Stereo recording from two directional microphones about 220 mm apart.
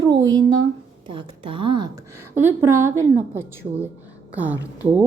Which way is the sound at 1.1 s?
25° right (ahead or behind).